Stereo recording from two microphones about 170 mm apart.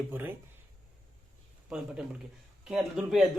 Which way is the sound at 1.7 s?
5° right (ahead or behind).